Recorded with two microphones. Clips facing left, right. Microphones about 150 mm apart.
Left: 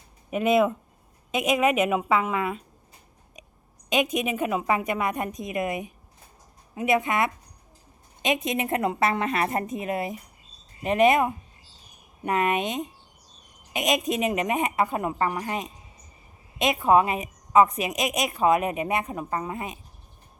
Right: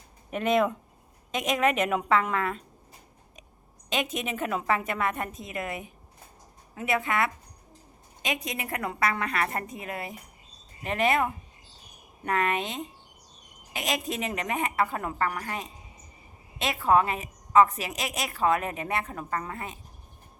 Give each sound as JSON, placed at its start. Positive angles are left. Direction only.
{"t": 0.3, "sound": "a woman's voice", "side_deg": 10}
{"t": 3.8, "sound": "a woman's voice", "side_deg": 15}